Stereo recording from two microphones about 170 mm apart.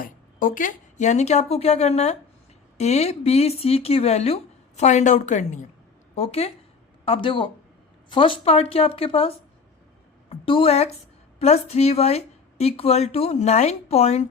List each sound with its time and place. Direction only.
0.0 s a woman's voice: 55° left (ahead or behind)